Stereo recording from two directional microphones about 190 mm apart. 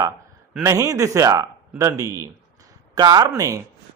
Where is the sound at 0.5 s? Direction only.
15° right (ahead or behind).